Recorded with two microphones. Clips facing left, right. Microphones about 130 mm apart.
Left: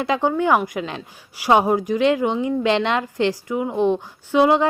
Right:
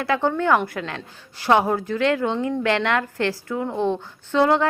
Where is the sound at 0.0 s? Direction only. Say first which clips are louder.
Left 2 dB; 15° left (ahead or behind).